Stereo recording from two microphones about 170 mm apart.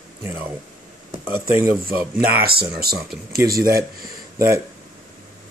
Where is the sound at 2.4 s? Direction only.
65° right (ahead or behind).